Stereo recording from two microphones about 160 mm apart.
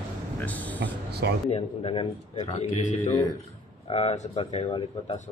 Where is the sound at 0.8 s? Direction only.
90° right.